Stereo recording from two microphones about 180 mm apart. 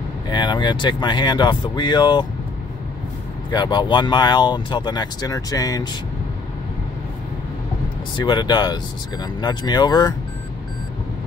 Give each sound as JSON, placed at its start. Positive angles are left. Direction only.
{"t": 0.3, "sound": "speech", "side_deg": 25}
{"t": 3.4, "sound": "speech", "side_deg": 25}
{"t": 8.2, "sound": "speech", "side_deg": 25}